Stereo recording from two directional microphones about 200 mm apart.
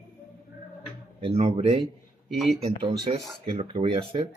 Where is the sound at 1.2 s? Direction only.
30° right (ahead or behind).